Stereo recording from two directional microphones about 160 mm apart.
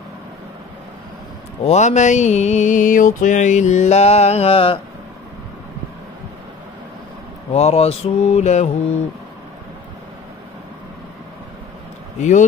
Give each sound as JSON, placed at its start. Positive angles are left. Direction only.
{"t": 1.6, "sound": "mantra", "side_deg": 45}
{"t": 7.5, "sound": "mantra", "side_deg": 40}
{"t": 12.2, "sound": "mantra", "side_deg": 50}